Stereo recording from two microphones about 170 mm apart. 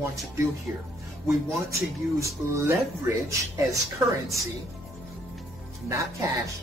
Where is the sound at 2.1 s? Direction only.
20° right (ahead or behind).